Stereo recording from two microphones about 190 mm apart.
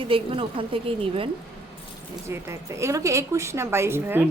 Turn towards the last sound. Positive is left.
turn(degrees=-10)  # may be behind; listen again after turning